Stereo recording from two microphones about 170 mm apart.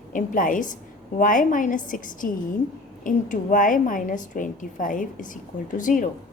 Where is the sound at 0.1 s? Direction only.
50° left (ahead or behind).